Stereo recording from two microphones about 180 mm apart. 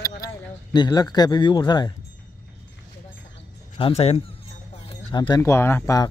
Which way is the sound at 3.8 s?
35° left (ahead or behind).